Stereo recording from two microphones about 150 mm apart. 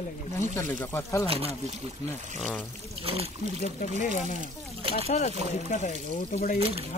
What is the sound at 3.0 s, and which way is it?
Speech, 40° right (ahead or behind).